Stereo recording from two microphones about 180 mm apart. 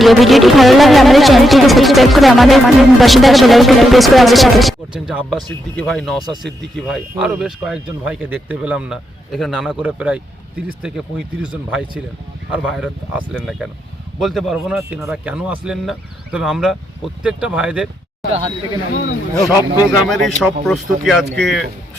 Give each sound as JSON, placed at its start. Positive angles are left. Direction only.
{"t": 0.0, "sound": "speech", "side_deg": 0}
{"t": 19.4, "sound": "speech", "side_deg": 20}
{"t": 19.8, "sound": "speech", "side_deg": 0}